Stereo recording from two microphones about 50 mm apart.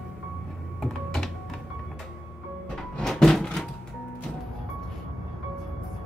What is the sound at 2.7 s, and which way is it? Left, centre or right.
Music, centre.